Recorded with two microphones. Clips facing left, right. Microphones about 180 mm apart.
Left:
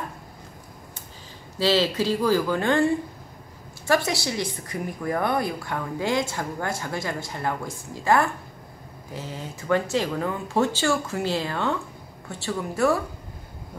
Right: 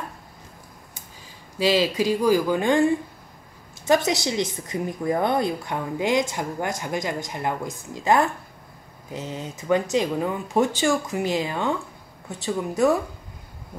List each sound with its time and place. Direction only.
1.6 s a woman's voice: 15° right (ahead or behind)